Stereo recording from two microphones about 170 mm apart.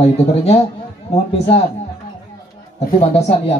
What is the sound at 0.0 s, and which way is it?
Speech, 40° left (ahead or behind).